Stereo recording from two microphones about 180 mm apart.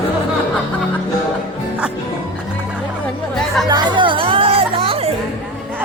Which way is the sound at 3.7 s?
25° right (ahead or behind).